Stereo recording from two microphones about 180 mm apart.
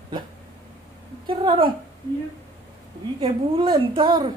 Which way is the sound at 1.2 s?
25° right (ahead or behind).